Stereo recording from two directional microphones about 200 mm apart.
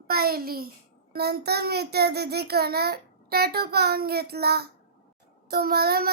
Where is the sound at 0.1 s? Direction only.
50° right (ahead or behind).